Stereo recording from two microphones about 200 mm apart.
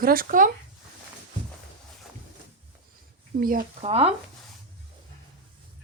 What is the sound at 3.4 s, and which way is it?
Speech, 45° right (ahead or behind).